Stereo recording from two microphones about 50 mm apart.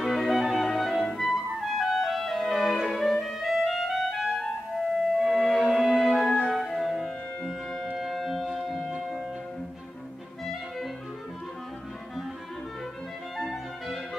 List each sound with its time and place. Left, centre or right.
0.0 s clarinet: centre
6.5 s music: centre
10.4 s clarinet: centre
13.4 s music: centre